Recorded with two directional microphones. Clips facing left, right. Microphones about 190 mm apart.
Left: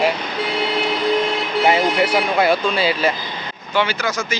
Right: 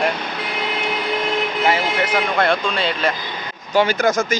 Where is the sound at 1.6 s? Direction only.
15° left (ahead or behind).